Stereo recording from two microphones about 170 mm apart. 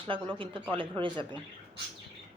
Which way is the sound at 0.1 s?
30° right (ahead or behind).